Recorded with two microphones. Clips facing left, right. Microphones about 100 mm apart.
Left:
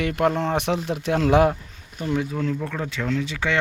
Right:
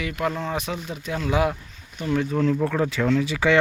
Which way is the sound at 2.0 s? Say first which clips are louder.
Even; 40° left (ahead or behind).